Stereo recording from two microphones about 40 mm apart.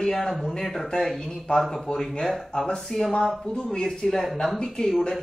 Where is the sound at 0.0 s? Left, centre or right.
Centre.